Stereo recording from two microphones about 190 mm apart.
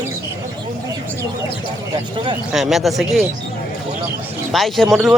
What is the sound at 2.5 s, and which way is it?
Speech, centre (ahead or behind).